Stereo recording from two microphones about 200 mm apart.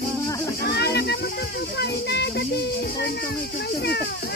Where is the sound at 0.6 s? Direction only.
55° left (ahead or behind).